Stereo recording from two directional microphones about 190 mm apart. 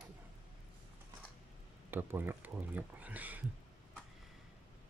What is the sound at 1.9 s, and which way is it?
Speech, 10° right (ahead or behind).